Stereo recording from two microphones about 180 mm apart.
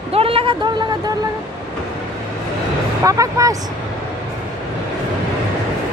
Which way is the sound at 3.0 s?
20° right (ahead or behind).